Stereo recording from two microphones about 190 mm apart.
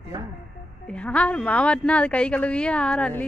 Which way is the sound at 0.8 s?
5° left (ahead or behind).